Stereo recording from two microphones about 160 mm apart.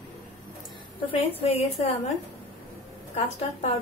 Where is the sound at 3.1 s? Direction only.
45° left (ahead or behind).